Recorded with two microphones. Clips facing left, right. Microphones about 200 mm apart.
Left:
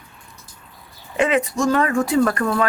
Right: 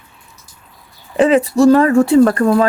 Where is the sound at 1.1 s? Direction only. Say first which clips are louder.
Right 8 dB; 35° right (ahead or behind).